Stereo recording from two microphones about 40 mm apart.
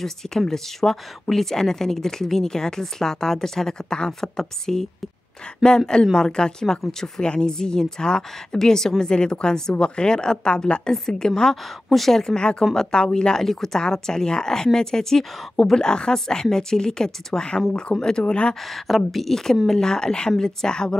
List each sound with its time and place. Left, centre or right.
0.5 s speech: centre
6.1 s speech: centre
11.9 s speech: centre
12.2 s speech: centre
18.6 s speech: centre
19.8 s speech: centre